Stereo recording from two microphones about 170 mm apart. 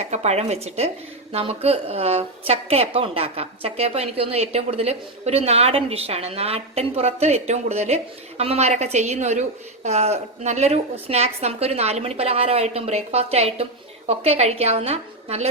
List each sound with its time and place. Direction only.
0.0 s a woman's voice: 40° right (ahead or behind)